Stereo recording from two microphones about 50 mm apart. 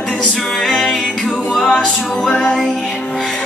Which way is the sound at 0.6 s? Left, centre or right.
Centre.